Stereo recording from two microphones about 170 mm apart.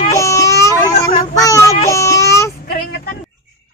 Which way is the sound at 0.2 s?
15° left (ahead or behind).